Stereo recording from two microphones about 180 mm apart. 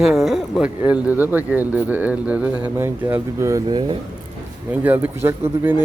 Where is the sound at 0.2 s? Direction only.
Centre (ahead or behind).